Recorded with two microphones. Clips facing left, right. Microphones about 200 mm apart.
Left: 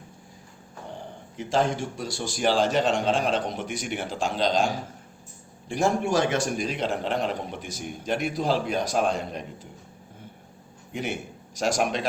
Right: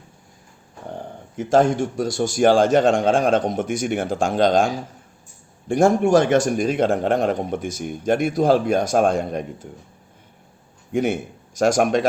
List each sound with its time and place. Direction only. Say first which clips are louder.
1.4 s a man's voice: right 8 dB; 50° right (ahead or behind)
11.5 s a man's voice: right 8 dB; 50° right (ahead or behind)